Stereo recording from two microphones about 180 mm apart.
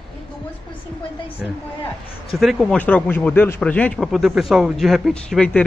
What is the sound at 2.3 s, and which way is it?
A man's voice, centre (ahead or behind).